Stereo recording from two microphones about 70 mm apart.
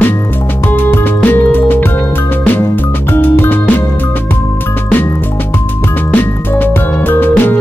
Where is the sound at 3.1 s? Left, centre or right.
Left.